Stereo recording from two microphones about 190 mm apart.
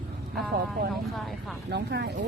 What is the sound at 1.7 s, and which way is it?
Speech, 60° right (ahead or behind).